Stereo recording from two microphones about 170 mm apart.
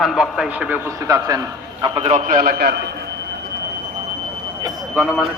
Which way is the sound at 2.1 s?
50° right (ahead or behind).